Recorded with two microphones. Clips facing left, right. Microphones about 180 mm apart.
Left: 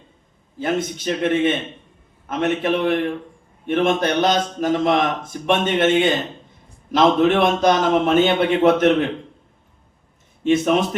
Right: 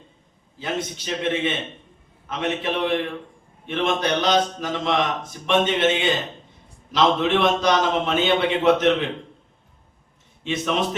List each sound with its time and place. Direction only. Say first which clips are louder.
0.6 s a man's voice: left 6 dB; 50° left (ahead or behind)
10.4 s a man's voice: left 7 dB; 50° left (ahead or behind)